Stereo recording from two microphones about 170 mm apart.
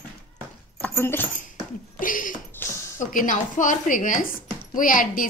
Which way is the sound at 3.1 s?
50° left (ahead or behind).